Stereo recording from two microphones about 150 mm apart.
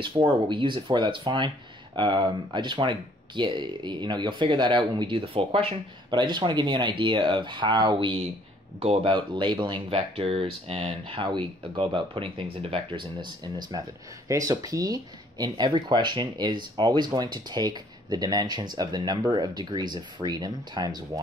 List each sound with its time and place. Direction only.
0.0 s speech: 35° right (ahead or behind)